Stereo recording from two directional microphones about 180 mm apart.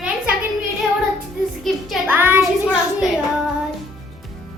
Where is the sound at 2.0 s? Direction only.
10° right (ahead or behind).